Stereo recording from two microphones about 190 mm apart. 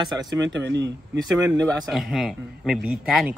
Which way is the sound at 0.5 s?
65° right (ahead or behind).